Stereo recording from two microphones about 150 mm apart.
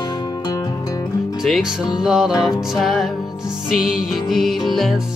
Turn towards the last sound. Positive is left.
turn(degrees=0)  # may be behind; listen again after turning